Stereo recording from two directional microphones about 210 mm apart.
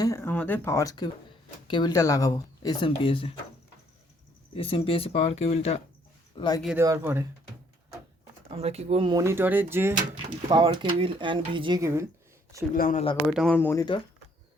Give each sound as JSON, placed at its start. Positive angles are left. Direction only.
{"t": 0.0, "sound": "speech", "side_deg": 15}
{"t": 4.5, "sound": "speech", "side_deg": 25}
{"t": 6.7, "sound": "speech", "side_deg": -10}
{"t": 8.4, "sound": "speech", "side_deg": -30}
{"t": 10.2, "sound": "speech", "side_deg": -25}
{"t": 12.7, "sound": "speech", "side_deg": 40}
{"t": 13.3, "sound": "speech", "side_deg": 5}